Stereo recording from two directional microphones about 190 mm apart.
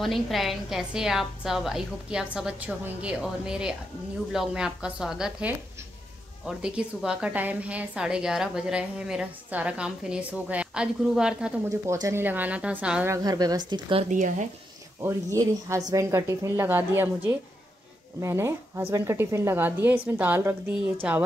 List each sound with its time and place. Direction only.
0.0 s a woman's voice: centre (ahead or behind)
11.8 s speech: 15° right (ahead or behind)
14.0 s a woman's voice: 40° right (ahead or behind)
15.3 s a woman's voice: 15° right (ahead or behind)